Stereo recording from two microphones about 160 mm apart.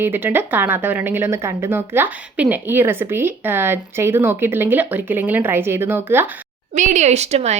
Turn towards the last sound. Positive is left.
turn(degrees=-45)  # may be behind; listen again after turning